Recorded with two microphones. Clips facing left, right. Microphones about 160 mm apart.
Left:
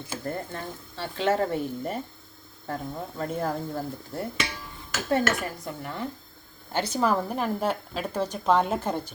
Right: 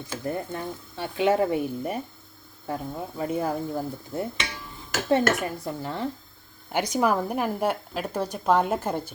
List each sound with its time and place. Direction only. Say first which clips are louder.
0.3 s a woman's voice: right 4 dB; 10° right (ahead or behind)
5.0 s dishes: right 3 dB; 25° right (ahead or behind)
6.7 s a woman's voice: right 1 dB; 15° right (ahead or behind)